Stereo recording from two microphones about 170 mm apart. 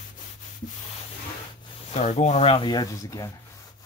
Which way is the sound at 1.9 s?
40° left (ahead or behind).